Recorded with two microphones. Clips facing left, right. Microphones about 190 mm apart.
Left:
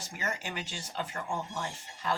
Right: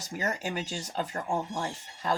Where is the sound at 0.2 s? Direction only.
40° right (ahead or behind).